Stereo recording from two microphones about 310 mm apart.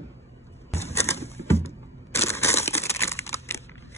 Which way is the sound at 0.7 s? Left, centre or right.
Centre.